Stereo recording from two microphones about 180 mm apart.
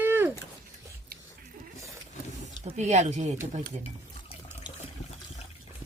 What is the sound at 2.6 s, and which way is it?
Speech, 40° right (ahead or behind).